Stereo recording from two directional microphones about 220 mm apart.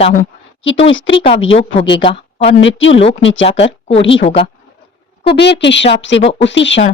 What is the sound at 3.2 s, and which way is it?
Speech, 60° left (ahead or behind).